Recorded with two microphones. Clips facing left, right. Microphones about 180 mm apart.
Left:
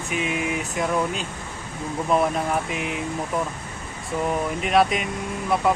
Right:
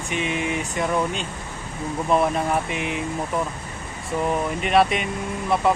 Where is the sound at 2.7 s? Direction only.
Centre (ahead or behind).